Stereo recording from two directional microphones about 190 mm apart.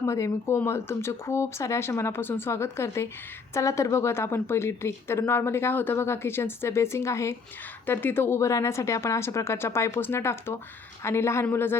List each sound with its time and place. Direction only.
0.0 s a woman's voice: 15° left (ahead or behind)